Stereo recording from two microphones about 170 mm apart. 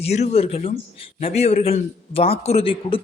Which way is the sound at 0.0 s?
40° left (ahead or behind).